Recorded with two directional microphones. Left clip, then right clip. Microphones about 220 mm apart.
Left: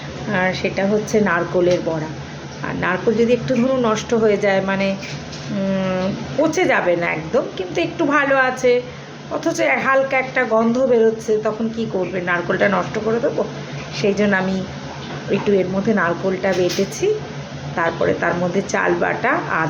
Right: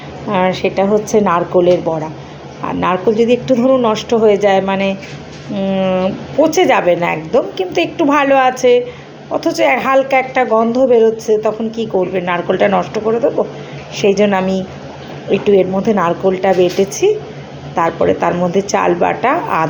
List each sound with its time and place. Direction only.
0.3 s speech: 25° right (ahead or behind)